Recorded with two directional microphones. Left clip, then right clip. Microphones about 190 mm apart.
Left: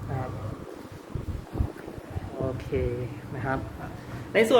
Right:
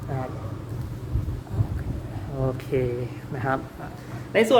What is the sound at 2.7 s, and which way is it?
Speech, 55° right (ahead or behind).